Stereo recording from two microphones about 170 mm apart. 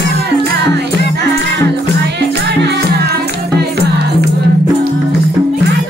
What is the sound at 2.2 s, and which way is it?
Music, 75° right (ahead or behind).